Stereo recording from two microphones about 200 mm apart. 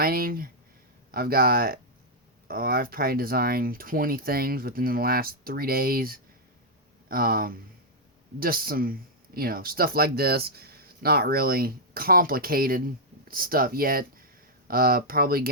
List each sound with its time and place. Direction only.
0.0 s speech: 45° right (ahead or behind)